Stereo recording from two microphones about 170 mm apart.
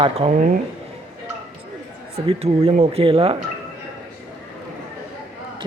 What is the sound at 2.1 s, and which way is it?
Speech, 35° right (ahead or behind).